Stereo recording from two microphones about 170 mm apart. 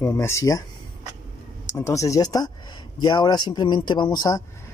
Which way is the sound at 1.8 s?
15° left (ahead or behind).